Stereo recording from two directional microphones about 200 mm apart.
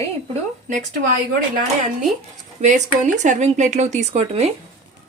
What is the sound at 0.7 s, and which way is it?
A woman's voice, 40° right (ahead or behind).